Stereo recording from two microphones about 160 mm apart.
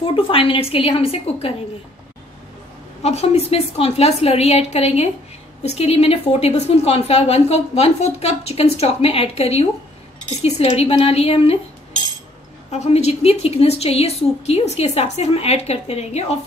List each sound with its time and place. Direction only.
0.0 s a woman's voice: 35° left (ahead or behind)
3.0 s a woman's voice: 40° left (ahead or behind)
12.7 s a woman's voice: 45° left (ahead or behind)